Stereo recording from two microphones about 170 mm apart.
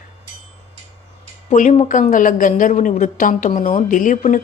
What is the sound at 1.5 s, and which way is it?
A woman's voice, 45° left (ahead or behind).